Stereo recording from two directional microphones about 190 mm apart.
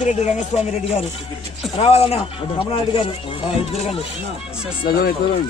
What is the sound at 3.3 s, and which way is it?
Speech, 35° left (ahead or behind).